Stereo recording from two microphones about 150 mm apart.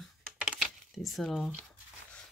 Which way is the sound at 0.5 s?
5° right (ahead or behind).